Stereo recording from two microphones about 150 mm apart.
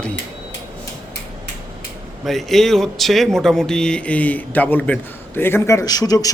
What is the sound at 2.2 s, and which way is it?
Speech, centre (ahead or behind).